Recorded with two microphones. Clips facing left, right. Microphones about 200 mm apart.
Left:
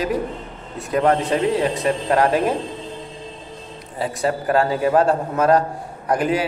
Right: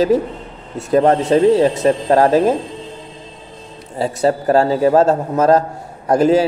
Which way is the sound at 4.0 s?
30° right (ahead or behind).